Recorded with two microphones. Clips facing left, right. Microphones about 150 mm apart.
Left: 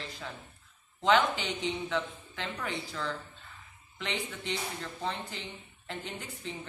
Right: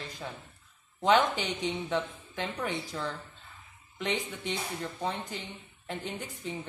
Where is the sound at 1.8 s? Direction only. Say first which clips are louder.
Right 2 dB; 15° right (ahead or behind).